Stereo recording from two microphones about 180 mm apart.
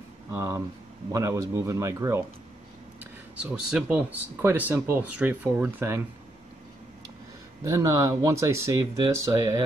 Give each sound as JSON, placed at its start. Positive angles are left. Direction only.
{"t": 0.3, "sound": "speech", "side_deg": -15}
{"t": 3.3, "sound": "speech", "side_deg": -5}
{"t": 7.6, "sound": "speech", "side_deg": -15}